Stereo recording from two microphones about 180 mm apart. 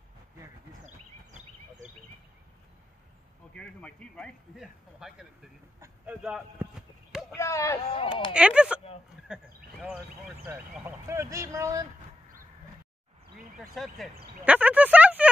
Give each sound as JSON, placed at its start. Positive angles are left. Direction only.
{"t": 0.8, "sound": "a sound", "side_deg": -40}
{"t": 3.5, "sound": "a man's voice", "side_deg": 5}
{"t": 5.8, "sound": "clip-clop", "side_deg": -5}
{"t": 7.3, "sound": "speech", "side_deg": 15}
{"t": 7.9, "sound": "speech", "side_deg": 30}
{"t": 8.3, "sound": "speech", "side_deg": -5}
{"t": 13.4, "sound": "speech", "side_deg": 0}